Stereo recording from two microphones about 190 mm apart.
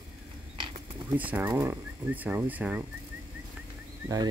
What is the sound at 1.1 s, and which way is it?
Speech, 10° right (ahead or behind).